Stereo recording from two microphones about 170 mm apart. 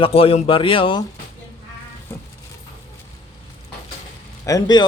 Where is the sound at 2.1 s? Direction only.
15° left (ahead or behind).